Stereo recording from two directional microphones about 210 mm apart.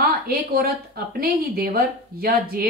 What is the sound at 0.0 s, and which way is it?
A woman's voice, 45° right (ahead or behind).